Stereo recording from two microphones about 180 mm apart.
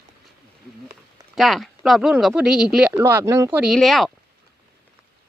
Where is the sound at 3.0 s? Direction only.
15° right (ahead or behind).